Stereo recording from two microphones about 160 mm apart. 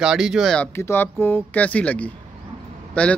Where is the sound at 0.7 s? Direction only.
15° left (ahead or behind).